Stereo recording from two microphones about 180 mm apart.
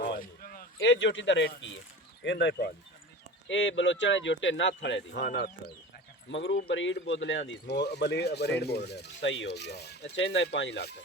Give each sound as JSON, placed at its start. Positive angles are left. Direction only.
{"t": 0.0, "sound": "a sound", "side_deg": 50}
{"t": 0.8, "sound": "speech", "side_deg": 90}
{"t": 3.5, "sound": "speech", "side_deg": 90}
{"t": 6.3, "sound": "speech", "side_deg": 90}
{"t": 6.6, "sound": "speech", "side_deg": 75}